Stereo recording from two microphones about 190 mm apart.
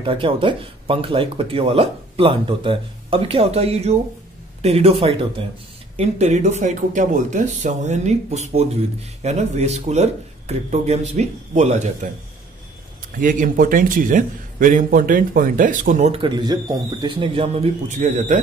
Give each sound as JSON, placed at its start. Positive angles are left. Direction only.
{"t": 0.0, "sound": "speech", "side_deg": -25}
{"t": 13.2, "sound": "a man's voice", "side_deg": -45}